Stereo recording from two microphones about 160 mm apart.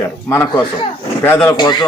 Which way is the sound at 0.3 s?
15° left (ahead or behind).